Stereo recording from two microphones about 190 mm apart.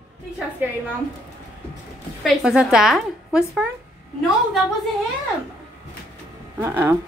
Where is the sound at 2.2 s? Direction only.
Centre (ahead or behind).